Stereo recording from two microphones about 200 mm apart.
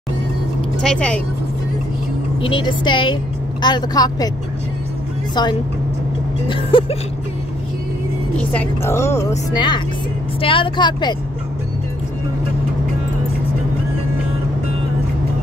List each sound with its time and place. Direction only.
0.8 s speech: 5° left (ahead or behind)
2.4 s speech: 25° left (ahead or behind)
5.3 s speech: 20° left (ahead or behind)
8.4 s a woman's voice: 10° left (ahead or behind)